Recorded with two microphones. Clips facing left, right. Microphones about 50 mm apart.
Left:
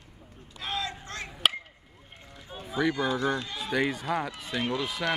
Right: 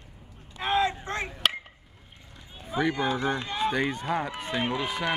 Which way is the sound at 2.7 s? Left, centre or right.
Right.